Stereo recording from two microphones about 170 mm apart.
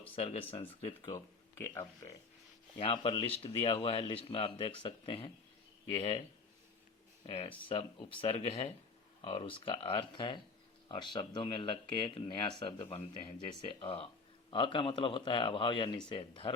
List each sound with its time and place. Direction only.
0.2 s a man's voice: 35° left (ahead or behind)
1.1 s speech: 15° left (ahead or behind)
2.7 s a man's voice: 35° left (ahead or behind)
7.3 s a man's voice: 30° left (ahead or behind)